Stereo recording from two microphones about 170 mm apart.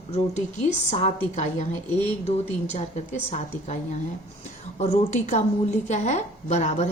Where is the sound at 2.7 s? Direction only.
40° left (ahead or behind).